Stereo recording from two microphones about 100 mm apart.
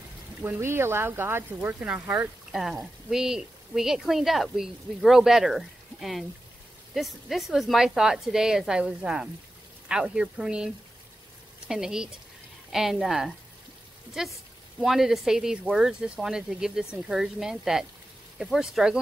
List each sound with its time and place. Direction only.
0.4 s speech: 25° right (ahead or behind)
2.5 s speech: 5° right (ahead or behind)